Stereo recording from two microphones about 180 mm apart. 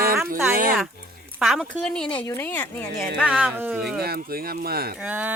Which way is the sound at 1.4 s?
Centre (ahead or behind).